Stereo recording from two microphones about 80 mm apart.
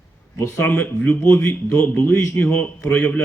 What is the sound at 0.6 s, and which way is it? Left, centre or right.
Speech, centre.